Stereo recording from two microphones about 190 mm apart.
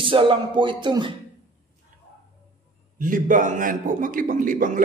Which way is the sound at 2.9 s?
45° right (ahead or behind).